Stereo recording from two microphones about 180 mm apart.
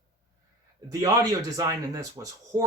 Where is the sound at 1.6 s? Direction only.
20° right (ahead or behind).